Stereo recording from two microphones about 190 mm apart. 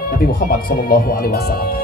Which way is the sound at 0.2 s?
50° left (ahead or behind).